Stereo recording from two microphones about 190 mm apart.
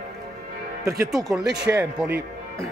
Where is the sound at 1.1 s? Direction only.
5° right (ahead or behind).